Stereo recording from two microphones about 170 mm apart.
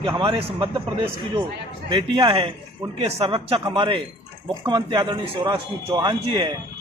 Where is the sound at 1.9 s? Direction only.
25° right (ahead or behind).